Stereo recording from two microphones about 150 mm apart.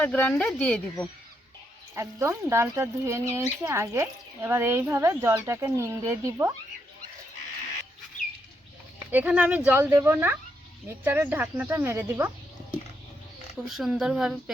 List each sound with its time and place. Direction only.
0.0 s speech: 10° left (ahead or behind)
2.0 s speech: 20° right (ahead or behind)
9.1 s speech: 10° right (ahead or behind)
13.7 s speech: centre (ahead or behind)